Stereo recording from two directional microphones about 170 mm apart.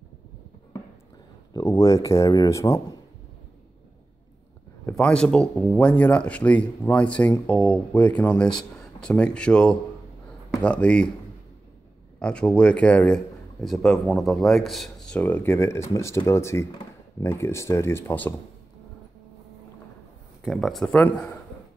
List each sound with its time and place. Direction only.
1.5 s speech: 20° left (ahead or behind)
4.8 s a man's voice: 5° left (ahead or behind)
12.2 s a man's voice: 5° left (ahead or behind)
20.4 s speech: centre (ahead or behind)